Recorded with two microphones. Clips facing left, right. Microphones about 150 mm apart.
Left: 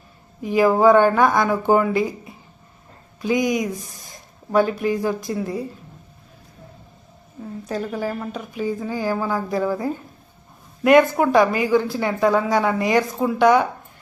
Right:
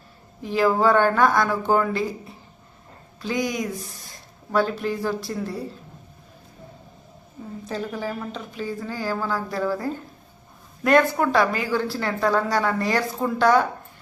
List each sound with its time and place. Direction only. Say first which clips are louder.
0.4 s speech: left 4 dB; 15° left (ahead or behind)
7.7 s speech: left 3 dB; 10° left (ahead or behind)